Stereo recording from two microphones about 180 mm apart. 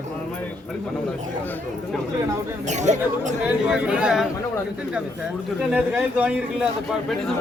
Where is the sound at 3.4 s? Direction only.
5° right (ahead or behind).